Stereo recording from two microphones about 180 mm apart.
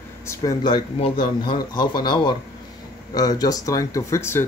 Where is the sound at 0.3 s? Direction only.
20° left (ahead or behind).